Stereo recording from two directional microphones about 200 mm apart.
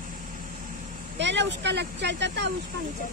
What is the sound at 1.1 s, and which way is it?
Speech, 60° right (ahead or behind).